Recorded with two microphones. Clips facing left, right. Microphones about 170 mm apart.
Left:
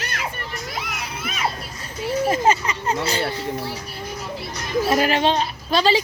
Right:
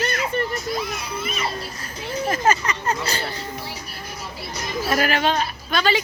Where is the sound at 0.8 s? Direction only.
90° left.